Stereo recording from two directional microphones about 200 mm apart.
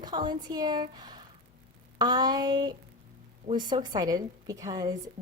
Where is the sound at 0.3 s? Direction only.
20° right (ahead or behind).